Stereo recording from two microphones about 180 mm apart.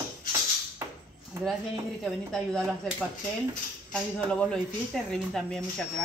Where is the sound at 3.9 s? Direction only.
5° left (ahead or behind).